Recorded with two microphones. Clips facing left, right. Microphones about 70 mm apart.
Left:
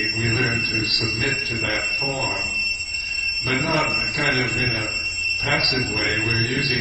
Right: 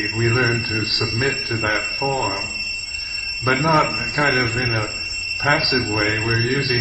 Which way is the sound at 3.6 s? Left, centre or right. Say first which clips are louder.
Right 5 dB; right.